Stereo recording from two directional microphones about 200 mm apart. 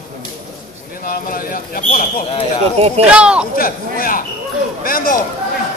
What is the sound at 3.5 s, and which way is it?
Speech, 45° left (ahead or behind).